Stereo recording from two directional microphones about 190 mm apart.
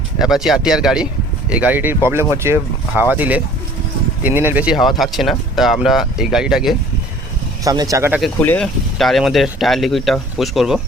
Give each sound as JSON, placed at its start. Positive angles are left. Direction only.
{"t": 0.2, "sound": "speech", "side_deg": 0}
{"t": 7.6, "sound": "speech", "side_deg": -20}
{"t": 8.4, "sound": "speech", "side_deg": 10}